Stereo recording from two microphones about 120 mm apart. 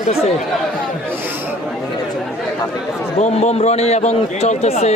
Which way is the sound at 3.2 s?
70° left (ahead or behind).